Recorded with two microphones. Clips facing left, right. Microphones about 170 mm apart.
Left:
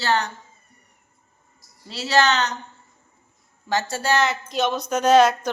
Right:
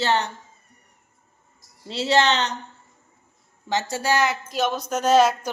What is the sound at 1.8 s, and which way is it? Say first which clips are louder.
Speech: even; 25° right (ahead or behind).